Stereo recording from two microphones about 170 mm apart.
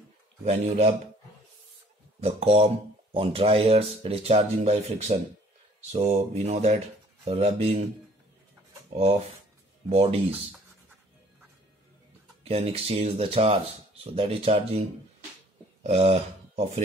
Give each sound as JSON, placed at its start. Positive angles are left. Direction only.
{"t": 0.5, "sound": "speech", "side_deg": -40}
{"t": 2.1, "sound": "speech", "side_deg": -35}
{"t": 9.8, "sound": "speech", "side_deg": -35}
{"t": 12.4, "sound": "speech", "side_deg": -35}